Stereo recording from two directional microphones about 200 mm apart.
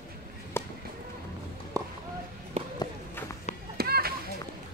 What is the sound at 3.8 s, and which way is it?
Children playing, 50° right (ahead or behind).